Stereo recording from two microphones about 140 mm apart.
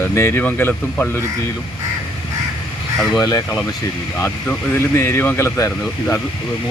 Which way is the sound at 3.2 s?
25° left (ahead or behind).